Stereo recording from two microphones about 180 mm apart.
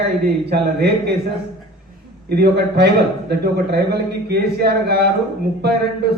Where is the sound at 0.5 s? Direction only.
60° right (ahead or behind).